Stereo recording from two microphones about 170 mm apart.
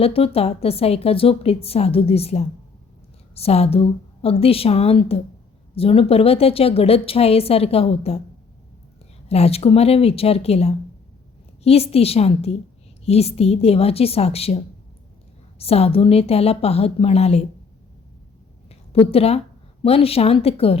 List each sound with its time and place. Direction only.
0.0 s a woman's voice: 35° left (ahead or behind)
9.3 s a woman's voice: 35° left (ahead or behind)
18.7 s a sound: 35° left (ahead or behind)
19.8 s a woman's voice: 35° left (ahead or behind)